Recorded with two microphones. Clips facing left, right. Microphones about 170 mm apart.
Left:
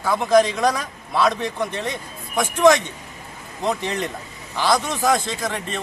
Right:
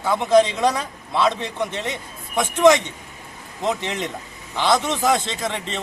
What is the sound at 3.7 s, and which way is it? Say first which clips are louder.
A man's voice: left 1 dB; 20° right (ahead or behind).